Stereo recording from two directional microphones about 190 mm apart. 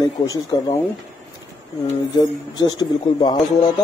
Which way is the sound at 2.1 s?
20° left (ahead or behind).